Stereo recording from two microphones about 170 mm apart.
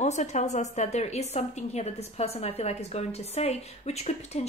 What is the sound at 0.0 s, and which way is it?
A woman's voice, 45° left (ahead or behind).